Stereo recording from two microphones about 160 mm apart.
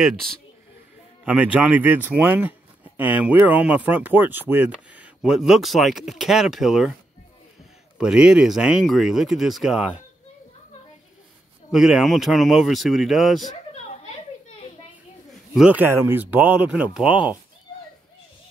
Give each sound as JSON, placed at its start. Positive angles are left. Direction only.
{"t": 0.0, "sound": "speech", "side_deg": 0}
{"t": 1.2, "sound": "speech", "side_deg": -10}
{"t": 8.0, "sound": "speech", "side_deg": -5}
{"t": 11.7, "sound": "speech", "side_deg": 0}
{"t": 14.0, "sound": "a sound", "side_deg": 40}
{"t": 15.2, "sound": "speech", "side_deg": -5}